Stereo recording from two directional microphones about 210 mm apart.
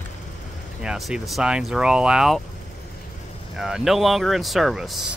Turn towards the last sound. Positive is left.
turn(degrees=0)  # may be behind; listen again after turning